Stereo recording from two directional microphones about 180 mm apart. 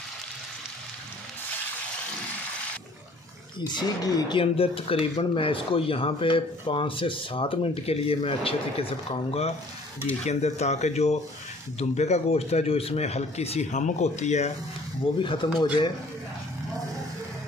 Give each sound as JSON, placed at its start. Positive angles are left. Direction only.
{"t": 3.6, "sound": "speech", "side_deg": 20}